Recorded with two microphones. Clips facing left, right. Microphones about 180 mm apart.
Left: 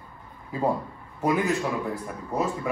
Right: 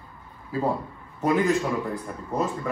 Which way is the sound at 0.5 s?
15° left (ahead or behind).